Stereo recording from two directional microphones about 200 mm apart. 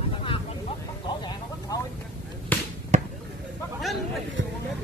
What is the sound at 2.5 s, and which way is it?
Basketball bounce, 10° left (ahead or behind).